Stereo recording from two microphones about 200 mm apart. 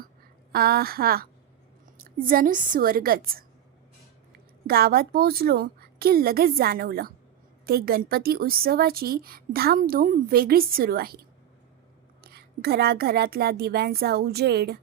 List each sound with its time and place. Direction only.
0.5 s a woman's voice: 50° right (ahead or behind)
4.6 s a woman's voice: 50° right (ahead or behind)